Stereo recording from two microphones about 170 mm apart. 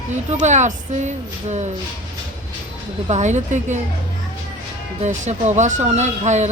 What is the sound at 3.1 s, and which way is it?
Speech, 45° right (ahead or behind).